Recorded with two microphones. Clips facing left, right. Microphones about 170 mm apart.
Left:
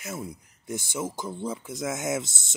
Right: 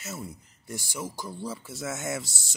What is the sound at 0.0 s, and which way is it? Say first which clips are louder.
Speech: left 3 dB; 15° left (ahead or behind).